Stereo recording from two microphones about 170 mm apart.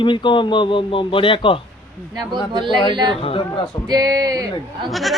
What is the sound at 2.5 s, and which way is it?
Speech, 30° right (ahead or behind).